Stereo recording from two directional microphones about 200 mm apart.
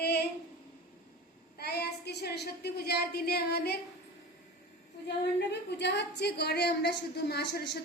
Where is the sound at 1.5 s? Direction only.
55° left (ahead or behind).